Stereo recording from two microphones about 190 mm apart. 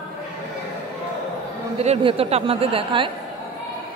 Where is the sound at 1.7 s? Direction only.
30° right (ahead or behind).